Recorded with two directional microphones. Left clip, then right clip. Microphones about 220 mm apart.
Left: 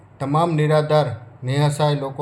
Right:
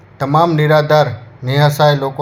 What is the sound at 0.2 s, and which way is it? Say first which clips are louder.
Speech: right 7 dB; 10° right (ahead or behind).